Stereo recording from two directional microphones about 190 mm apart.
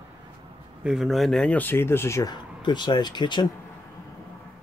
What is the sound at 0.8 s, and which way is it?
Speech, centre (ahead or behind).